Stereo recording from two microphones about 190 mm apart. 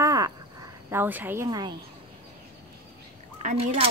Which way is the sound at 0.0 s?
20° right (ahead or behind).